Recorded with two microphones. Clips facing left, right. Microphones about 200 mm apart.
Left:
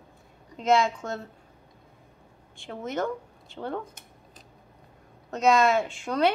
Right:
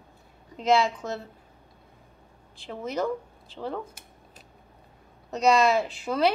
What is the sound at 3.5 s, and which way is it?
Speech, centre (ahead or behind).